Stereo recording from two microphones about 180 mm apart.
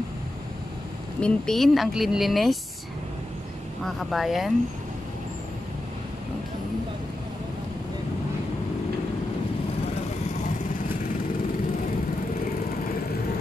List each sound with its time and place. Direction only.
1.2 s speech: 5° left (ahead or behind)
3.8 s speech: centre (ahead or behind)